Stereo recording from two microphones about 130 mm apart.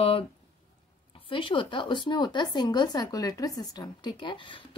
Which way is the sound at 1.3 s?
40° left (ahead or behind).